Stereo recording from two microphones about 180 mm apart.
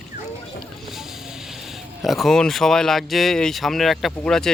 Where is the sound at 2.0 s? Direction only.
Centre (ahead or behind).